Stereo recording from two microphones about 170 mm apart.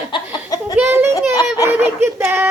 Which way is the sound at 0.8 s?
15° right (ahead or behind).